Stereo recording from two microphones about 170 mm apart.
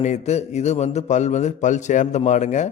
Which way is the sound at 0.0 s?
45° left (ahead or behind).